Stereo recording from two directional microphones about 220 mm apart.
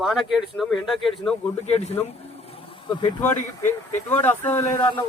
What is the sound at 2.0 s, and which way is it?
Vehicle, 25° left (ahead or behind).